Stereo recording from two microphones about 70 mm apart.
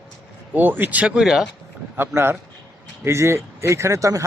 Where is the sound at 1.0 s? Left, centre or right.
Centre.